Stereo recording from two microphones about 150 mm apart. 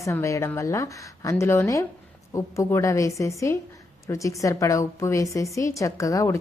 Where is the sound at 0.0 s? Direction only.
20° left (ahead or behind).